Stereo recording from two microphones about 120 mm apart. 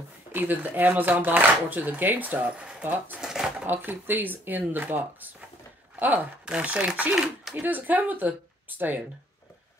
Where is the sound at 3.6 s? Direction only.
15° right (ahead or behind).